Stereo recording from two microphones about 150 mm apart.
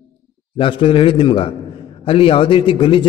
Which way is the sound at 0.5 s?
35° left (ahead or behind).